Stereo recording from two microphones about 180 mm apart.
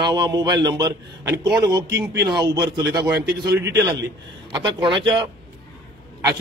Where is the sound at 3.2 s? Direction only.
60° right (ahead or behind).